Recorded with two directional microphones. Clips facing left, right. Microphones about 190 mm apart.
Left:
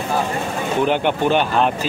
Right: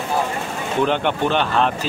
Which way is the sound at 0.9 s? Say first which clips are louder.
Left 4 dB; 10° left (ahead or behind).